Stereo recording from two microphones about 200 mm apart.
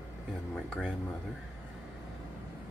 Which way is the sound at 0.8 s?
5° left (ahead or behind).